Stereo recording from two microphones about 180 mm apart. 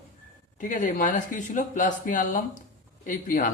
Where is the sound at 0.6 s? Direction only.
45° left (ahead or behind).